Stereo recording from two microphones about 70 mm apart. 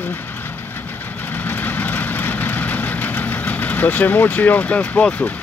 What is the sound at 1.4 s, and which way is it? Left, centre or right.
Vehicle, left.